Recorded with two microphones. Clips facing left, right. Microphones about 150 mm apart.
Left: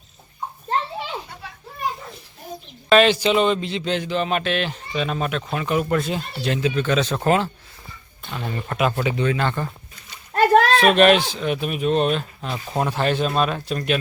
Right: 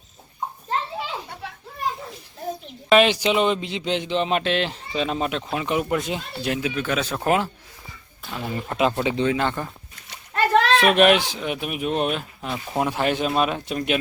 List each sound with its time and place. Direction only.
2.9 s speech: 15° right (ahead or behind)
8.7 s speech: 20° right (ahead or behind)
10.3 s a sound: 45° left (ahead or behind)
10.8 s speech: 15° right (ahead or behind)